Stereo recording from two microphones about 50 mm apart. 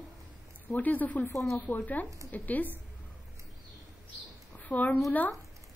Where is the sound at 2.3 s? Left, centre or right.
Left.